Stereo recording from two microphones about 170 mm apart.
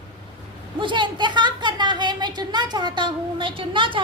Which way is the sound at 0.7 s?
30° right (ahead or behind).